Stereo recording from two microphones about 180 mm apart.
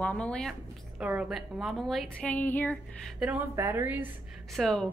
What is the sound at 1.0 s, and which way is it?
A woman's voice, 5° right (ahead or behind).